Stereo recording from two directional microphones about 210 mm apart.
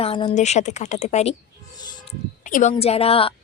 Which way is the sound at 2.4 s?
35° left (ahead or behind).